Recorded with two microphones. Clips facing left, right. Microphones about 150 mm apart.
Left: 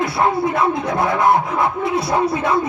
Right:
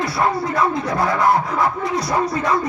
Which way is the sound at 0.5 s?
25° left (ahead or behind).